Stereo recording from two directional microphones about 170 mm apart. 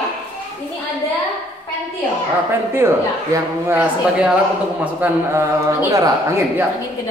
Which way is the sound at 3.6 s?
10° right (ahead or behind).